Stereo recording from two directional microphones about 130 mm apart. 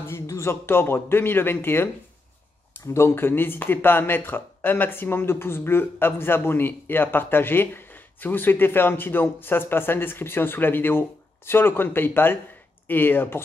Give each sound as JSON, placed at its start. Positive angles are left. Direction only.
{"t": 0.0, "sound": "speech", "side_deg": 20}
{"t": 2.9, "sound": "speech", "side_deg": 20}